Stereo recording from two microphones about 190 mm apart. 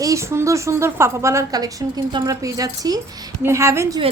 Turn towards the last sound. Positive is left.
turn(degrees=-15)  # may be behind; listen again after turning